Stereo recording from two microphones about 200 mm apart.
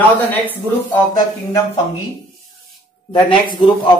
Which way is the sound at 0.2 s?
10° left (ahead or behind).